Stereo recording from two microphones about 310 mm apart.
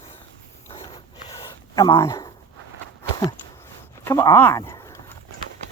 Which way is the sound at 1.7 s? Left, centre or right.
Centre.